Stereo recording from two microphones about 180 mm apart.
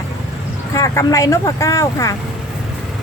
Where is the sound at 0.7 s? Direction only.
15° left (ahead or behind).